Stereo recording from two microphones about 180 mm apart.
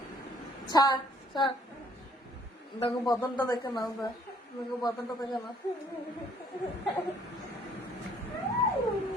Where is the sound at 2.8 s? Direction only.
25° left (ahead or behind).